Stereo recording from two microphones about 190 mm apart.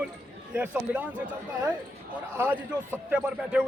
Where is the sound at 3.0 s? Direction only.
5° right (ahead or behind).